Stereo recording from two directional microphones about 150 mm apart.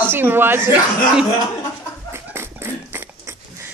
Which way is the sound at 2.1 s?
15° right (ahead or behind).